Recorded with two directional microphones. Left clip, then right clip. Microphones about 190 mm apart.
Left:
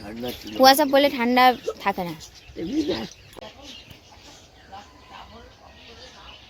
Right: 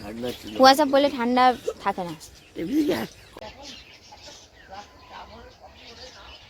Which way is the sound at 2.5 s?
25° right (ahead or behind).